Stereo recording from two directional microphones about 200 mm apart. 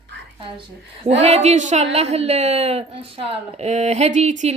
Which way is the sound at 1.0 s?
30° right (ahead or behind).